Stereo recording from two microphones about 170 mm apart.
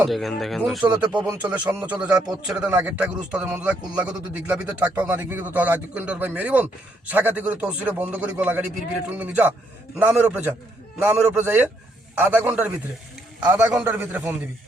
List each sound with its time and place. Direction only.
0.0 s a man's voice: centre (ahead or behind)